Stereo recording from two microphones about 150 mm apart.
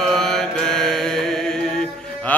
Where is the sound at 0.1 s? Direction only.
5° left (ahead or behind).